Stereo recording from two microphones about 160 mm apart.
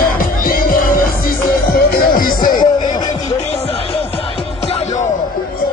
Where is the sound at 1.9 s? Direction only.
65° left (ahead or behind).